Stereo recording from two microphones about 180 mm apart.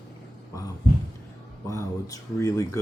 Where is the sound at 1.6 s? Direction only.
15° left (ahead or behind).